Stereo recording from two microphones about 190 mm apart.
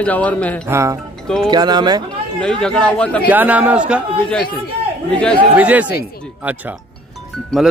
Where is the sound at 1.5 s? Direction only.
20° right (ahead or behind).